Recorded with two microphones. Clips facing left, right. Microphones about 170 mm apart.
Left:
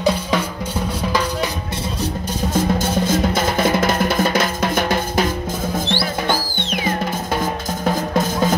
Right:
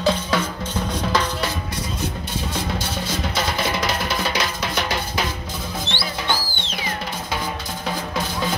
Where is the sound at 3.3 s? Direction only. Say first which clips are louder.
Left 6 dB; 50° left (ahead or behind).